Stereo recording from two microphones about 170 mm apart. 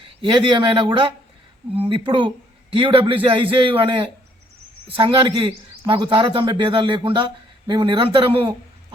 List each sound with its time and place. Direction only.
0.2 s a man's voice: 30° right (ahead or behind)